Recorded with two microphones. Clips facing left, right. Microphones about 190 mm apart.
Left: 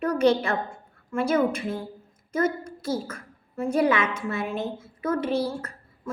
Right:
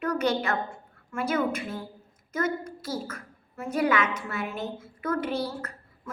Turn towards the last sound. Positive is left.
turn(degrees=30)  # may be behind; listen again after turning